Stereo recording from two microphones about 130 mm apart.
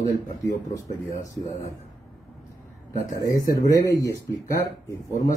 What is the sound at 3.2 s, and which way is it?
Speech, 25° left (ahead or behind).